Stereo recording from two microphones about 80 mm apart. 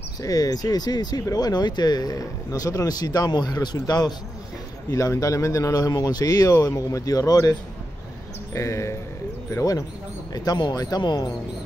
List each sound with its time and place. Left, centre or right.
0.2 s speech: left
4.9 s speech: left
8.5 s speech: left
10.3 s speech: left